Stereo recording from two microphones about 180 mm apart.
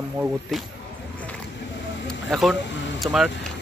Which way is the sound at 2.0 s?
Centre (ahead or behind).